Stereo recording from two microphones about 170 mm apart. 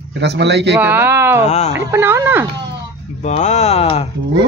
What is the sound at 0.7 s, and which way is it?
Speech, 10° right (ahead or behind).